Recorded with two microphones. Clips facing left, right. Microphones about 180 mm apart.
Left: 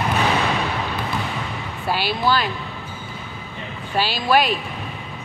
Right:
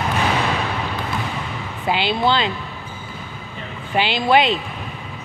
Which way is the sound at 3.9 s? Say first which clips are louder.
Right 2 dB; 20° right (ahead or behind).